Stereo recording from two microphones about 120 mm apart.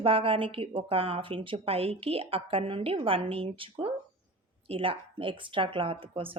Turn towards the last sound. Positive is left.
turn(degrees=-50)  # may be behind; listen again after turning